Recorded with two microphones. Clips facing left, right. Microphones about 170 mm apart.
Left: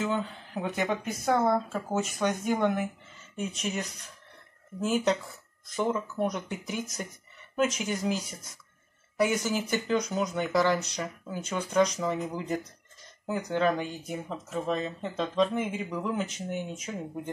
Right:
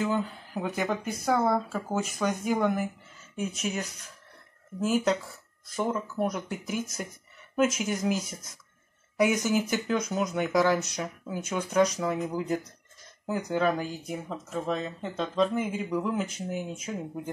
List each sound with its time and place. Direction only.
0.0 s speech: 5° right (ahead or behind)
9.2 s speech: 10° right (ahead or behind)